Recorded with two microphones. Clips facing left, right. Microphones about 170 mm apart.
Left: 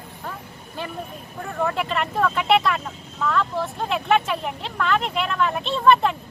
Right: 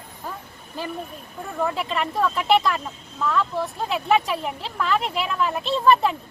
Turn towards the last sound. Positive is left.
turn(degrees=0)  # may be behind; listen again after turning